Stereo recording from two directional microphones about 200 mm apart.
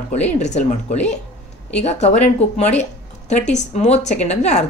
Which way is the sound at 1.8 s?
35° left (ahead or behind).